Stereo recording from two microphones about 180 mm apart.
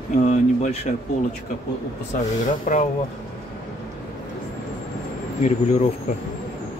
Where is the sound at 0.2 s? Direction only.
40° left (ahead or behind).